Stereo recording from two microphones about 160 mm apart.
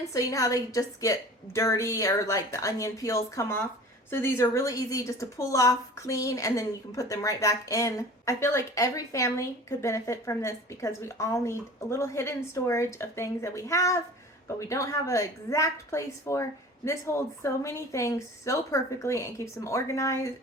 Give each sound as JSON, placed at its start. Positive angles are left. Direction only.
{"t": 0.1, "sound": "a woman's voice", "side_deg": 20}